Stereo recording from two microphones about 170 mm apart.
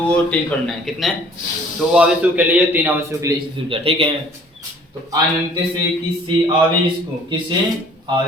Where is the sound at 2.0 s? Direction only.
10° right (ahead or behind).